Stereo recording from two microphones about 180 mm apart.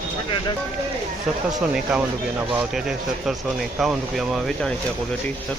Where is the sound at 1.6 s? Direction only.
5° right (ahead or behind).